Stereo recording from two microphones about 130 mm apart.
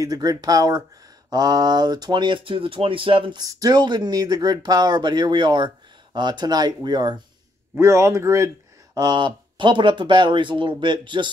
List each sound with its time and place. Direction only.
0.0 s speech: 30° right (ahead or behind)
7.7 s speech: 20° right (ahead or behind); by 11.3 s 35° right (ahead or behind)